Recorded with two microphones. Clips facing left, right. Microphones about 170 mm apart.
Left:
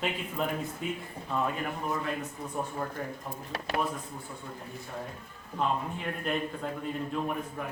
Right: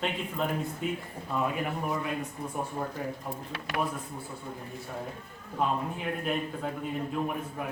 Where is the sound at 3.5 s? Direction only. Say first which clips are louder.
Left 2 dB; 35° left (ahead or behind).